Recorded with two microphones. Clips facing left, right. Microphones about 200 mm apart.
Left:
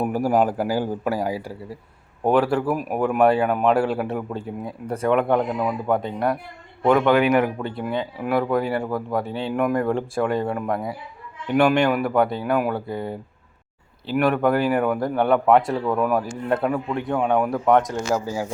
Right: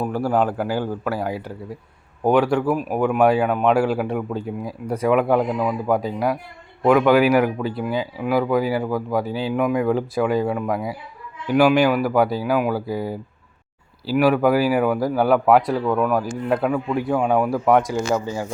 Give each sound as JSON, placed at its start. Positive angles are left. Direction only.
{"t": 0.0, "sound": "a man's voice", "side_deg": 15}